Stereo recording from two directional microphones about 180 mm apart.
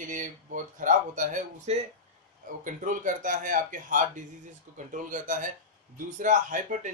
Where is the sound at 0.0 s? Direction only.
45° right (ahead or behind).